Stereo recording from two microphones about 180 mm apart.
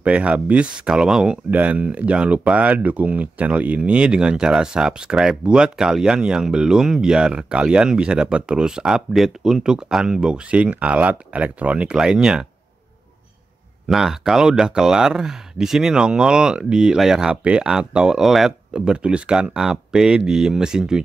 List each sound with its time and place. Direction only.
0.0 s speech: 5° right (ahead or behind)
13.8 s speech: centre (ahead or behind)